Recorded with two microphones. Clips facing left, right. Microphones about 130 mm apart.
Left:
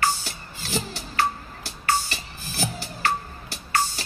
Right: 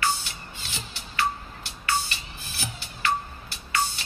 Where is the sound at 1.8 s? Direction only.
40° left (ahead or behind).